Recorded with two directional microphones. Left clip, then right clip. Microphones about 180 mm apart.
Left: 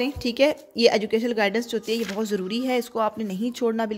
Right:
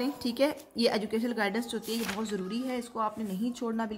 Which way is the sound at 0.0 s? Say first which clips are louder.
Left 8 dB; 35° left (ahead or behind).